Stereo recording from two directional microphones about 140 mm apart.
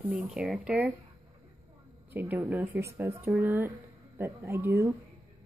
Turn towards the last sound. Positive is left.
turn(degrees=-20)  # may be behind; listen again after turning